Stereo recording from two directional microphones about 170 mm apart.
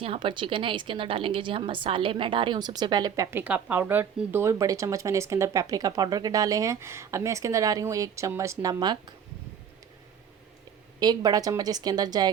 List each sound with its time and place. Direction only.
0.0 s a woman's voice: 30° right (ahead or behind)
11.0 s a woman's voice: 25° right (ahead or behind)